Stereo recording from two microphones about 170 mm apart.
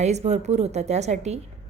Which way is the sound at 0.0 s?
40° right (ahead or behind).